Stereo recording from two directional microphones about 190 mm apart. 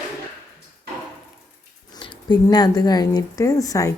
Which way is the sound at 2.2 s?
20° left (ahead or behind).